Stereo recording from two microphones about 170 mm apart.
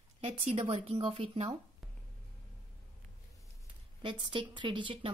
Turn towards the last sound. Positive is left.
turn(degrees=-30)  # may be behind; listen again after turning